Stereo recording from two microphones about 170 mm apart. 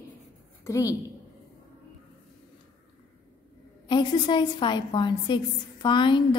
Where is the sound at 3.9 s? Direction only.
30° left (ahead or behind).